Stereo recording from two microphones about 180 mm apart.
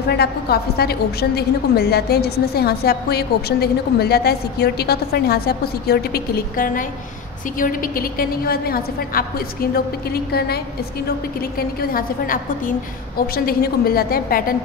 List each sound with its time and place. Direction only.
0.1 s a woman's voice: 60° left (ahead or behind)
11.5 s a woman's voice: 55° left (ahead or behind)